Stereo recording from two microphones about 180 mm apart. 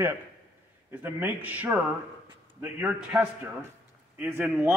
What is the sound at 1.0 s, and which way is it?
A man's voice, 10° right (ahead or behind).